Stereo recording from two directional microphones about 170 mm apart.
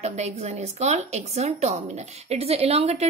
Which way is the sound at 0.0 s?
40° right (ahead or behind).